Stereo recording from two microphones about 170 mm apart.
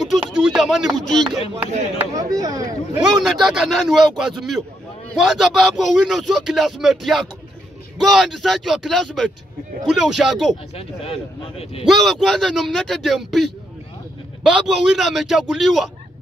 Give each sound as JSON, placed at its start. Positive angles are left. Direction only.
{"t": 0.0, "sound": "a sound", "side_deg": 0}
{"t": 2.1, "sound": "speech", "side_deg": -20}
{"t": 3.2, "sound": "speech", "side_deg": 0}
{"t": 10.7, "sound": "speech", "side_deg": 35}
{"t": 11.8, "sound": "speech", "side_deg": 0}